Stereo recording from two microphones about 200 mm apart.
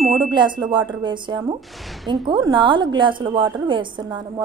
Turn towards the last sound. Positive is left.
turn(degrees=-25)  # may be behind; listen again after turning